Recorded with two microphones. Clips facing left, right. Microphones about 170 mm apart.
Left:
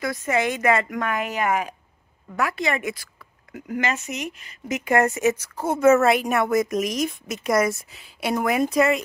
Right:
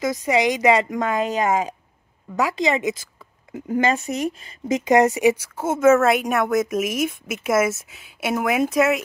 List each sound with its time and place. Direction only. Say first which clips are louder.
0.0 s speech: right 4 dB; 20° right (ahead or behind)
4.8 s speech: right 4 dB; 15° right (ahead or behind)
5.6 s a woman's voice: even; centre (ahead or behind)